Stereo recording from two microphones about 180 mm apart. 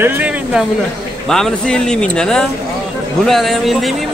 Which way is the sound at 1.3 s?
5° left (ahead or behind).